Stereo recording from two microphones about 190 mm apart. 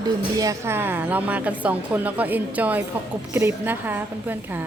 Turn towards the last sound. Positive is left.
turn(degrees=-10)  # may be behind; listen again after turning